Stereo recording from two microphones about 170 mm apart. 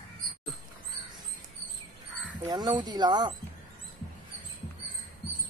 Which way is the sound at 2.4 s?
25° right (ahead or behind).